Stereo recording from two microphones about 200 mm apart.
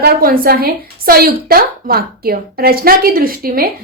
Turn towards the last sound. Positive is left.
turn(degrees=-50)  # may be behind; listen again after turning